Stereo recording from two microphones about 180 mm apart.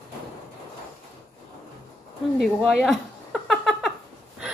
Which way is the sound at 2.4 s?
Centre (ahead or behind).